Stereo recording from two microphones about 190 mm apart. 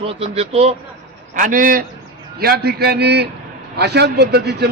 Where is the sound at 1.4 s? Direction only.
45° right (ahead or behind).